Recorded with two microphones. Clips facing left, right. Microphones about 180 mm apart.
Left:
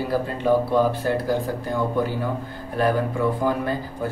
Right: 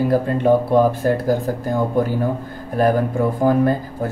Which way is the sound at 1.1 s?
50° right (ahead or behind).